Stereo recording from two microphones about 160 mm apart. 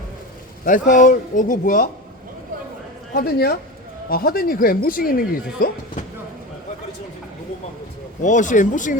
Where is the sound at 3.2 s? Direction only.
75° left (ahead or behind).